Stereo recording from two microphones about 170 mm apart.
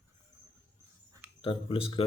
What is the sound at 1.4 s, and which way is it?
Speech, 30° left (ahead or behind).